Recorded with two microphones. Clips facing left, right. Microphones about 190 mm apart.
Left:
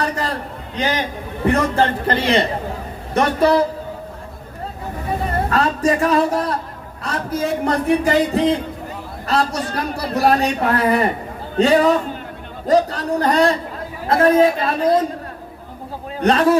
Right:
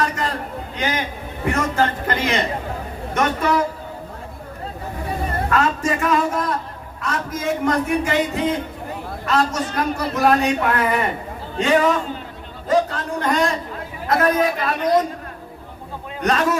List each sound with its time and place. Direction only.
0.8 s a man's voice: 35° left (ahead or behind)
5.5 s a man's voice: 35° left (ahead or behind)
16.2 s a man's voice: 30° left (ahead or behind)